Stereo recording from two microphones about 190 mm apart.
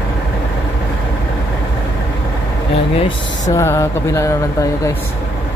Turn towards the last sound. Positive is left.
turn(degrees=15)  # may be behind; listen again after turning